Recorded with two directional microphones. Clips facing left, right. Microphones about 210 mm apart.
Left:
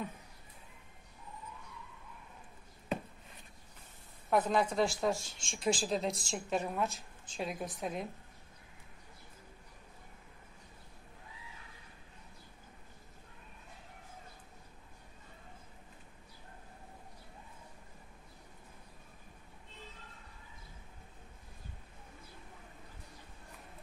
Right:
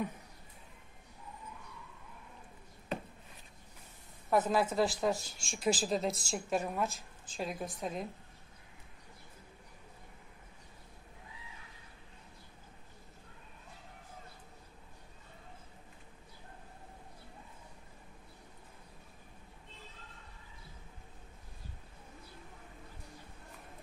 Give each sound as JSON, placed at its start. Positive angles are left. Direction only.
{"t": 4.3, "sound": "speech", "side_deg": -5}
{"t": 5.1, "sound": "speech", "side_deg": 25}
{"t": 5.5, "sound": "speech", "side_deg": -5}